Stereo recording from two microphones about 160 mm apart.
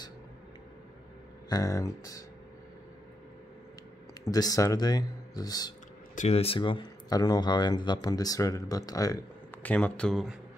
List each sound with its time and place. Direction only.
1.5 s speech: 20° left (ahead or behind)
4.3 s speech: 20° left (ahead or behind)
6.1 s speech: 40° left (ahead or behind); by 9.2 s 20° left (ahead or behind)
9.6 s a man's voice: 10° left (ahead or behind)